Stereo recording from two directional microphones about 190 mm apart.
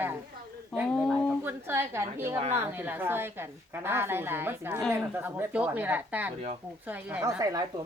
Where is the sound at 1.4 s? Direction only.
10° right (ahead or behind).